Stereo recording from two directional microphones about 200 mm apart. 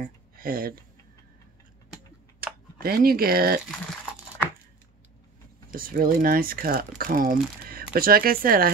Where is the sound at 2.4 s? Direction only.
50° right (ahead or behind).